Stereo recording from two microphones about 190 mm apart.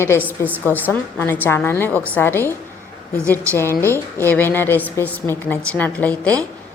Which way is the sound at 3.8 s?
10° left (ahead or behind).